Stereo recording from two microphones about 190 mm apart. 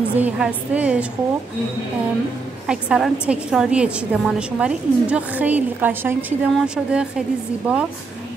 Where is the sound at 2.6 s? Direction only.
5° right (ahead or behind).